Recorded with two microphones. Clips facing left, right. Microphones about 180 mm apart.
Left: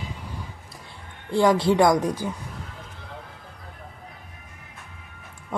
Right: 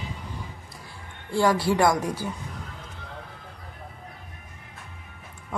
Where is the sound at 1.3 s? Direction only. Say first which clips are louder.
Left 3 dB; 20° left (ahead or behind).